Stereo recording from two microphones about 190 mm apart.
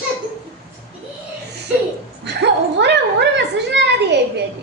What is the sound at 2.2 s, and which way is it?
Dog, 65° right (ahead or behind).